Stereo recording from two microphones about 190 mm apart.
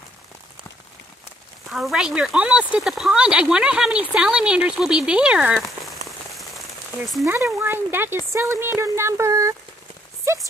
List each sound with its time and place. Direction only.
1.7 s speech: centre (ahead or behind)
7.2 s speech: 15° right (ahead or behind)
10.2 s clip-clop: 15° right (ahead or behind)